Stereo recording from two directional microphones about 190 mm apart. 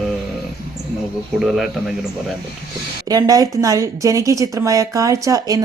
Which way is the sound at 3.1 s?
20° right (ahead or behind).